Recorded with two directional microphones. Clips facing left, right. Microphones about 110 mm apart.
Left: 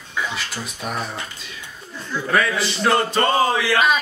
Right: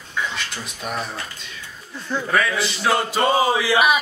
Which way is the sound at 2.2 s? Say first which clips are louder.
Left 2 dB; centre (ahead or behind).